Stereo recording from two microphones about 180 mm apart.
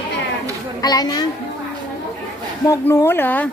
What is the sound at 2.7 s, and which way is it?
Speech, 15° left (ahead or behind).